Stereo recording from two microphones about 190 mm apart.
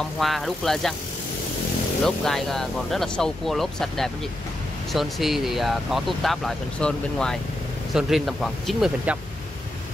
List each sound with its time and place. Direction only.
0.2 s speech: centre (ahead or behind)
2.0 s speech: centre (ahead or behind)